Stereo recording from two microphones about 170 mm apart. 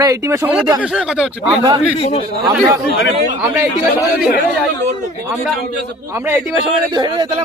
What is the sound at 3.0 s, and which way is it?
Speech, 90° left.